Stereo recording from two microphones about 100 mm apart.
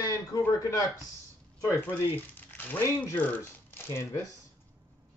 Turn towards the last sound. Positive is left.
turn(degrees=30)  # may be behind; listen again after turning